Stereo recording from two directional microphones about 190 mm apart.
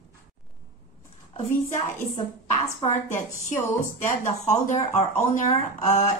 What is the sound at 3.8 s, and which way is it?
Speech, 40° left (ahead or behind).